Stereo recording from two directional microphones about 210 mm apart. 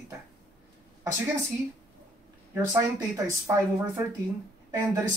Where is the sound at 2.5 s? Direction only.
15° right (ahead or behind).